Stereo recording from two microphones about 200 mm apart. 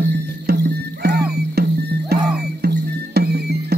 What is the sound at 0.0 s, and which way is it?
Music, 55° right (ahead or behind).